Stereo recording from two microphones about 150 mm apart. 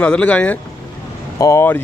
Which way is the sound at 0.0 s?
10° left (ahead or behind).